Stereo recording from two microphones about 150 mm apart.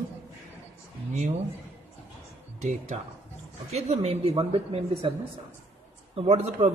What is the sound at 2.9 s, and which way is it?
A woman's voice, 50° right (ahead or behind).